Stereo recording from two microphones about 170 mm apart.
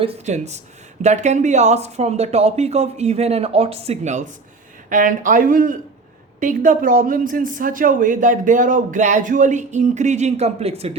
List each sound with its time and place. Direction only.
0.0 s speech: 40° right (ahead or behind)